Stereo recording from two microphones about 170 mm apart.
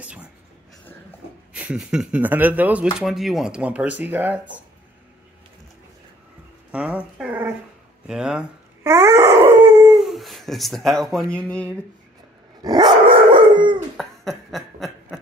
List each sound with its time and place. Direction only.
0.0 s speech: 5° right (ahead or behind)
1.5 s speech: 5° right (ahead or behind)
6.7 s speech: 5° right (ahead or behind)
8.8 s wail: 15° right (ahead or behind)
9.9 s speech: centre (ahead or behind)
12.6 s dog: 30° right (ahead or behind)
13.9 s cough: centre (ahead or behind)